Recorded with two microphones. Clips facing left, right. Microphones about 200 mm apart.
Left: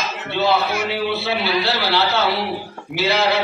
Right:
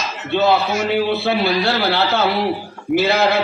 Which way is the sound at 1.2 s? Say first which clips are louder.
Right 3 dB; 50° right (ahead or behind).